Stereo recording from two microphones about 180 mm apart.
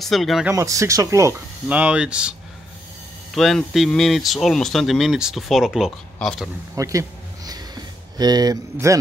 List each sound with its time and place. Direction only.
0.0 s speech: centre (ahead or behind)
0.6 s speech: 15° right (ahead or behind)
3.3 s speech: centre (ahead or behind)
6.7 s a sound: 20° right (ahead or behind)